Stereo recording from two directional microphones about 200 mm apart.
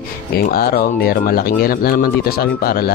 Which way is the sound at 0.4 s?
45° left (ahead or behind).